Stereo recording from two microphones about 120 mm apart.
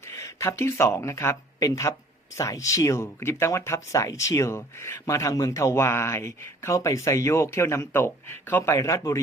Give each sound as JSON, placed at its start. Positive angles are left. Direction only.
{"t": 0.0, "sound": "speech", "side_deg": 25}